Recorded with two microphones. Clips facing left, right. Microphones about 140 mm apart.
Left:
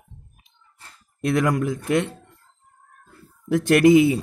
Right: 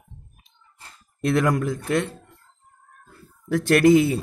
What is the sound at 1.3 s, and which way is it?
Speech, 10° left (ahead or behind).